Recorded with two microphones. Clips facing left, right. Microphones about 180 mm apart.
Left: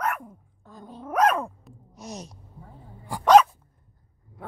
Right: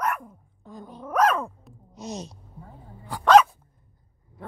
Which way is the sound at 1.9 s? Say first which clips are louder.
Right 4 dB; 25° right (ahead or behind).